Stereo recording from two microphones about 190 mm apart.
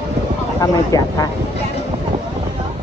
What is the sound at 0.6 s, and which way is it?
Speech, 20° left (ahead or behind).